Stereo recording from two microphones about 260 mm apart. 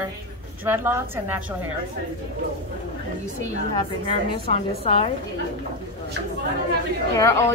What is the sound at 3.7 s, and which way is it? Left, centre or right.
A woman's voice, centre.